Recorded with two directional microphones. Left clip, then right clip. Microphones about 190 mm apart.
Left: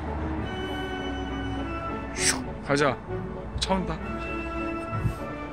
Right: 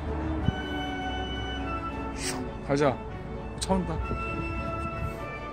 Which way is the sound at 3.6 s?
25° right (ahead or behind).